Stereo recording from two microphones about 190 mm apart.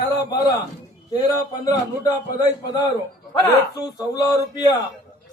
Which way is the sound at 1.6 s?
20° left (ahead or behind).